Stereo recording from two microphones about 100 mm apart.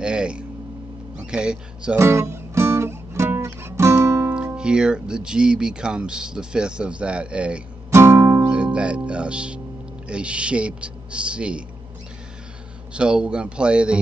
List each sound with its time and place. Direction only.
0.0 s a sound: 10° right (ahead or behind)
1.2 s speech: 10° right (ahead or behind)
2.0 s music: 25° right (ahead or behind)
4.6 s speech: 10° right (ahead or behind)
7.9 s music: 25° right (ahead or behind)
8.5 s speech: 10° right (ahead or behind)
12.9 s speech: 10° right (ahead or behind)